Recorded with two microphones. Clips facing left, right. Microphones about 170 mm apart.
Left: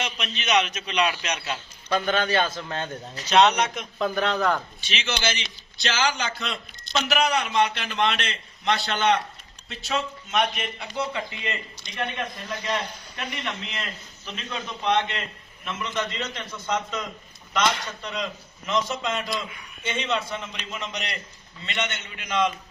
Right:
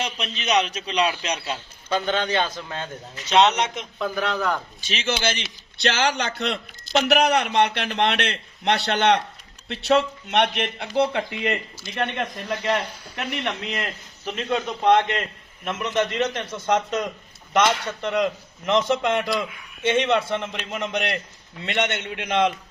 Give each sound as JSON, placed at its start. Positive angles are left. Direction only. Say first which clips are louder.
{"t": 0.0, "sound": "a man's voice", "louder": "right 2 dB", "side_deg": -35}
{"t": 1.5, "sound": "a man's voice", "louder": "right 1 dB", "side_deg": -20}
{"t": 4.0, "sound": "speech", "louder": "left 1 dB", "side_deg": -5}
{"t": 4.8, "sound": "a man's voice", "louder": "right 4 dB", "side_deg": -45}
{"t": 5.2, "sound": "speech", "louder": "right 2 dB", "side_deg": -55}
{"t": 14.3, "sound": "a man's voice", "louder": "right 9 dB", "side_deg": -50}
{"t": 15.6, "sound": "speech", "louder": "right 6 dB", "side_deg": -60}
{"t": 16.7, "sound": "a man's voice", "louder": "right 6 dB", "side_deg": -50}
{"t": 18.0, "sound": "speech", "louder": "right 9 dB", "side_deg": -60}